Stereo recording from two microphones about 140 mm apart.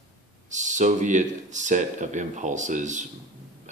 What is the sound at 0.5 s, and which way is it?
Speech, 60° right (ahead or behind).